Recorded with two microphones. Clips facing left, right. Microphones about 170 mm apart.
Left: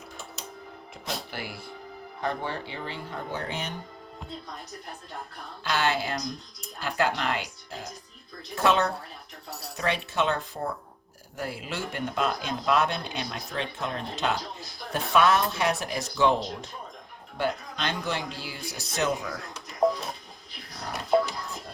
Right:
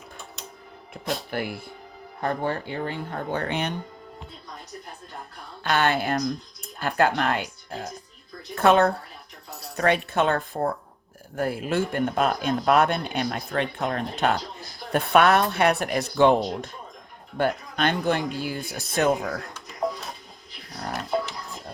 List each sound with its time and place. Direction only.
1.3 s speech: 55° right (ahead or behind)
5.6 s speech: 55° right (ahead or behind)
8.5 s speech: 55° right (ahead or behind)